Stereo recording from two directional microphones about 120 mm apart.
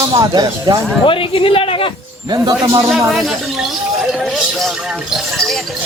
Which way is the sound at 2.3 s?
35° right (ahead or behind).